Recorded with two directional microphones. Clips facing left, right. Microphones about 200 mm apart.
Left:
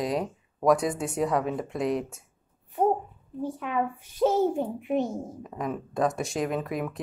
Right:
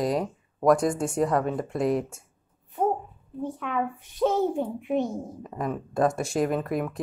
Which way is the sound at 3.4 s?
10° left (ahead or behind).